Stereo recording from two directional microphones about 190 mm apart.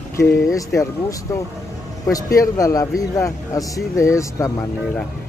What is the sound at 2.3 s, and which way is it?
Speech, 15° left (ahead or behind).